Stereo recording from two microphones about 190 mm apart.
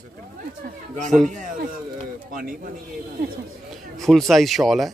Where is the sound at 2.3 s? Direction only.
45° right (ahead or behind).